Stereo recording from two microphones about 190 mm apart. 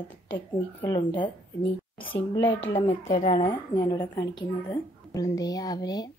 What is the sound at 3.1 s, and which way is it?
A woman's voice, 35° left (ahead or behind).